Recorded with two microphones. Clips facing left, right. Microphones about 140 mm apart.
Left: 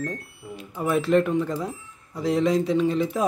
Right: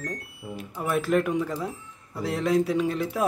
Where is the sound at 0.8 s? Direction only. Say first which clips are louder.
Left 3 dB; centre (ahead or behind).